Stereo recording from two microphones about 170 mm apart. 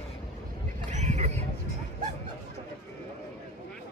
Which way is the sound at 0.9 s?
45° right (ahead or behind).